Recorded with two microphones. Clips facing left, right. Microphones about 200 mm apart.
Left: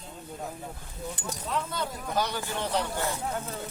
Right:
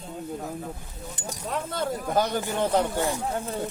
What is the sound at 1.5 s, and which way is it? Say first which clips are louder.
Speech: right 4 dB; 50° right (ahead or behind).